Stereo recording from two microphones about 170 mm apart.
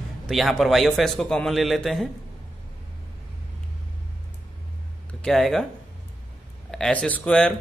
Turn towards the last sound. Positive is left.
turn(degrees=5)  # may be behind; listen again after turning